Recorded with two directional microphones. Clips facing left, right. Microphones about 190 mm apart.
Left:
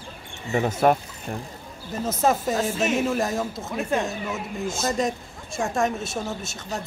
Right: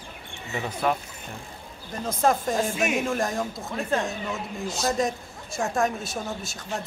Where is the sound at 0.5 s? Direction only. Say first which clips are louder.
Left 7 dB; 45° left (ahead or behind).